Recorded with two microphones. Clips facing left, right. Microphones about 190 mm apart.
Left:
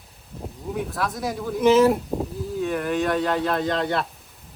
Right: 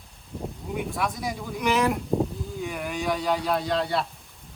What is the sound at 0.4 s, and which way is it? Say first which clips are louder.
Speech: left 2 dB; centre (ahead or behind).